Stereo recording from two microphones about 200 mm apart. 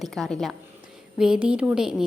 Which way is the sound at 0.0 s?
Centre (ahead or behind).